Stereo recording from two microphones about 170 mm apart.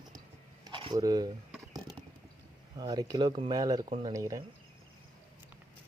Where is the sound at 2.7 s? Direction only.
25° right (ahead or behind).